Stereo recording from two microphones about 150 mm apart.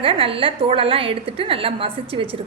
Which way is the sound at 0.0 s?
40° right (ahead or behind).